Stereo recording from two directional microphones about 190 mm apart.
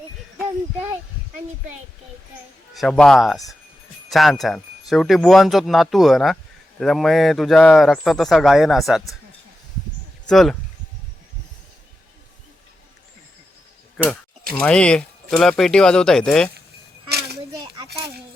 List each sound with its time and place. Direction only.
2.7 s speech: centre (ahead or behind)
10.2 s speech: 5° left (ahead or behind)
14.6 s speech: 5° left (ahead or behind)
17.1 s a sound: 55° right (ahead or behind)